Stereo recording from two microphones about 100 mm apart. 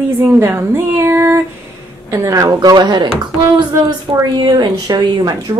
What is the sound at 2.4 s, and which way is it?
Speech, 45° right (ahead or behind).